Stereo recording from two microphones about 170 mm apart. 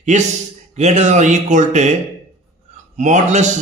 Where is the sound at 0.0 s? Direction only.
45° right (ahead or behind).